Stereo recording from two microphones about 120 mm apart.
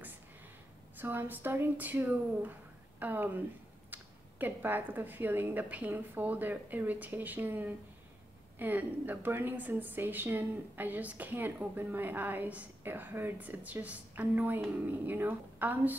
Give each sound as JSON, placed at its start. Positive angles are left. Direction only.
{"t": 0.9, "sound": "a woman's voice", "side_deg": -15}